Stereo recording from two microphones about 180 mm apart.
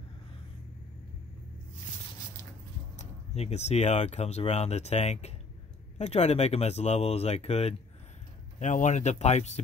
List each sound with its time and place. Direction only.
3.0 s speech: 35° left (ahead or behind)